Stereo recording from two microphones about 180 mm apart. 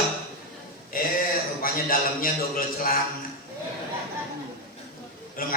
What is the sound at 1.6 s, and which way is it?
A man's voice, 50° left (ahead or behind).